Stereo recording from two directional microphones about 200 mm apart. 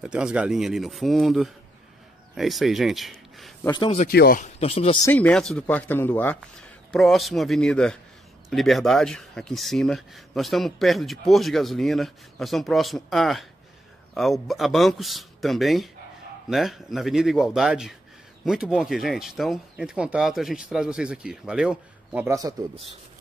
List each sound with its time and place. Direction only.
0.0 s speech: 5° right (ahead or behind)
3.6 s a man's voice: 25° left (ahead or behind)
4.1 s speech: 55° left (ahead or behind)
4.4 s speech: 30° left (ahead or behind)
5.0 s speech: 5° left (ahead or behind); by 22.8 s 20° right (ahead or behind)